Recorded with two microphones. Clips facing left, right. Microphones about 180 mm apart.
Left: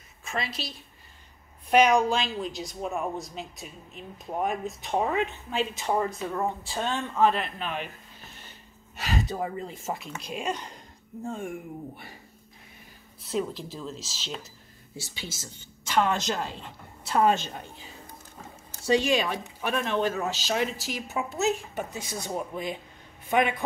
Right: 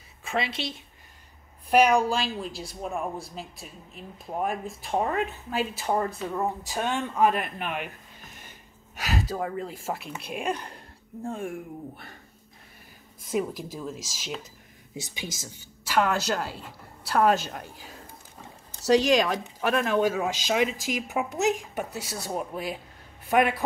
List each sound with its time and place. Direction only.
0.2 s a woman's voice: 30° right (ahead or behind)
1.7 s speech: 5° right (ahead or behind)
8.9 s speech: 5° right (ahead or behind)
13.3 s speech: 10° right (ahead or behind)
15.0 s speech: 15° right (ahead or behind)
19.7 s speech: 10° right (ahead or behind)